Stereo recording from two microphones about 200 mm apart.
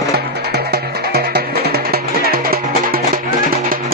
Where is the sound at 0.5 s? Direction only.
55° right (ahead or behind).